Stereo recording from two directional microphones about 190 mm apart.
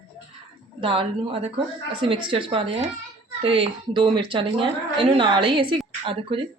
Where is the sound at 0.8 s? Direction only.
25° right (ahead or behind).